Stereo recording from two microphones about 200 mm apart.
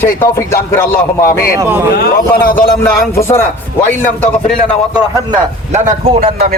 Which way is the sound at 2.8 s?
15° left (ahead or behind).